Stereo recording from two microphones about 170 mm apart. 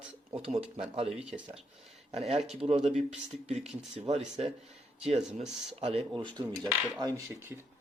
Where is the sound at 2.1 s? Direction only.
40° right (ahead or behind).